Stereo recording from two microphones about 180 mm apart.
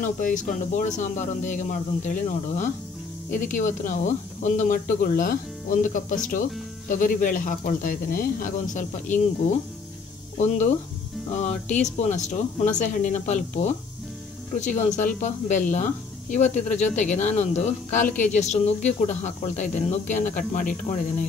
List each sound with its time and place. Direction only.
0.0 s speech: 45° left (ahead or behind)